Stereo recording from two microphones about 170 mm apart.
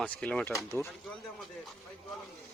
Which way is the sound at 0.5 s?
15° left (ahead or behind).